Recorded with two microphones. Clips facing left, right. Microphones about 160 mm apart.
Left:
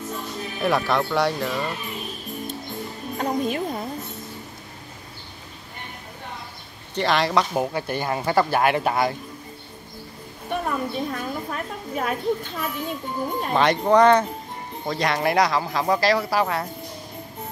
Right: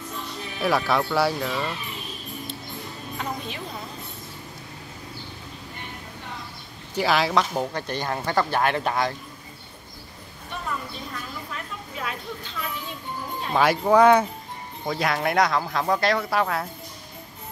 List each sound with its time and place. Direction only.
0.6 s speech: centre (ahead or behind)
3.2 s music: 45° left (ahead or behind)
7.0 s speech: 5° right (ahead or behind)
10.5 s a sound: 55° left (ahead or behind)
13.5 s speech: 5° right (ahead or behind)